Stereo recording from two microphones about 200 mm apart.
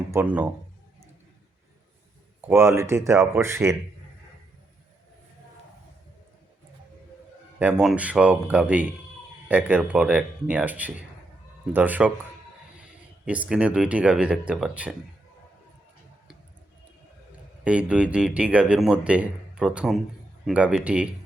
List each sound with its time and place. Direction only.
0.1 s speech: 10° right (ahead or behind)
2.5 s speech: 10° right (ahead or behind)
7.6 s speech: 5° right (ahead or behind)
13.2 s speech: 5° right (ahead or behind)
17.6 s speech: 5° right (ahead or behind)